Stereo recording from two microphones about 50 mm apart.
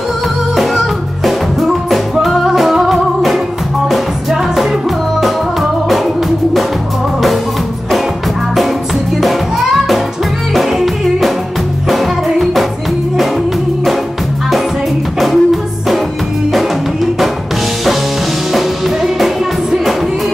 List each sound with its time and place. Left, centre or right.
0.6 s music: centre
9.2 s music: centre
15.1 s music: centre
18.5 s music: centre